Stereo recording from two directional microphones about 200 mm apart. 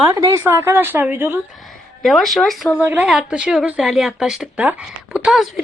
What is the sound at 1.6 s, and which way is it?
Speech, centre (ahead or behind).